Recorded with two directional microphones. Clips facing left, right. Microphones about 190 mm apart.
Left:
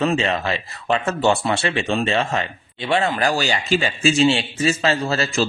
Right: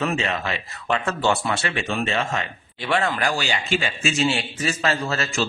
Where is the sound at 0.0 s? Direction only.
30° left (ahead or behind).